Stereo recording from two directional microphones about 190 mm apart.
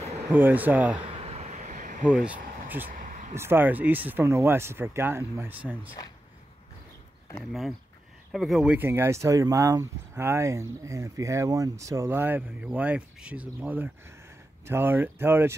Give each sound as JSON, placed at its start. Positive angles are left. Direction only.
{"t": 0.3, "sound": "speech", "side_deg": -10}
{"t": 1.2, "sound": "vehicle", "side_deg": -35}
{"t": 2.0, "sound": "speech", "side_deg": -5}
{"t": 2.9, "sound": "a sound", "side_deg": -45}
{"t": 3.3, "sound": "speech", "side_deg": -10}
{"t": 8.3, "sound": "speech", "side_deg": 0}